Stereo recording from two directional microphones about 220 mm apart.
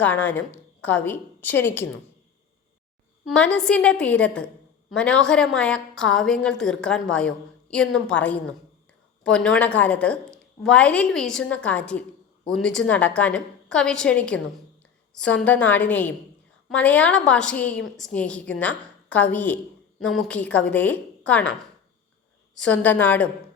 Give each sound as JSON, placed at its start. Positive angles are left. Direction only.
{"t": 0.0, "sound": "a woman's voice", "side_deg": 5}
{"t": 3.2, "sound": "a woman's voice", "side_deg": 5}